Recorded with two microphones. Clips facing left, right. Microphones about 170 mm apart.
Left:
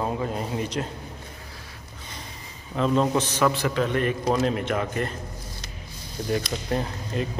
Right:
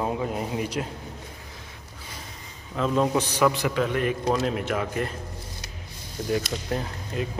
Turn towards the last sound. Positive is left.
turn(degrees=-5)  # may be behind; listen again after turning